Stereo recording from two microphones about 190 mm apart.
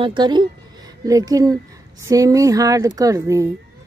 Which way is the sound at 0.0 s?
25° right (ahead or behind).